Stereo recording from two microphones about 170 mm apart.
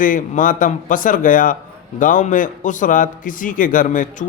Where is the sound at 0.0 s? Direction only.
50° left (ahead or behind).